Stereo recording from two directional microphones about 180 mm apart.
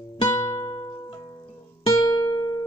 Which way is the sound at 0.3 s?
15° left (ahead or behind).